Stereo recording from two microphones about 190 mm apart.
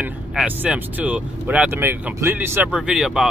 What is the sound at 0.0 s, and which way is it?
Speech, 5° right (ahead or behind).